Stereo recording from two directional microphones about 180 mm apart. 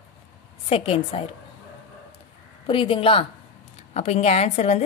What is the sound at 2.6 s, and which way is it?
A woman's voice, 30° left (ahead or behind).